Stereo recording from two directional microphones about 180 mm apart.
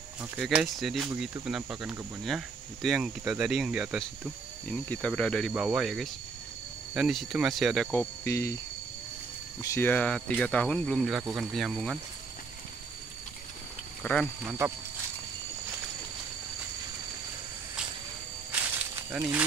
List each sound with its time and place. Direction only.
0.2 s speech: 5° right (ahead or behind)
4.6 s speech: 5° left (ahead or behind)
5.5 s speech: 5° right (ahead or behind)
7.9 s speech: 10° left (ahead or behind)
9.6 s speech: 15° left (ahead or behind); by 12.0 s centre (ahead or behind)
14.0 s speech: 10° left (ahead or behind)
14.4 s speech: 10° right (ahead or behind)
18.5 s snake: 10° right (ahead or behind)